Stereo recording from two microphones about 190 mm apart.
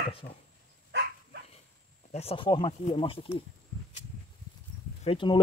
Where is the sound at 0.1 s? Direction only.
30° left (ahead or behind).